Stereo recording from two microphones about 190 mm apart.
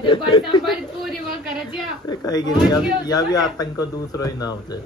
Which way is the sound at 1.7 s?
20° left (ahead or behind).